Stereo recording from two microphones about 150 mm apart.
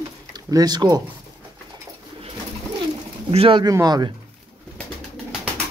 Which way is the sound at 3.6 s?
25° right (ahead or behind).